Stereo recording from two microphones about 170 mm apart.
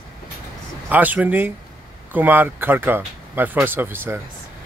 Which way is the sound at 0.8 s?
10° right (ahead or behind).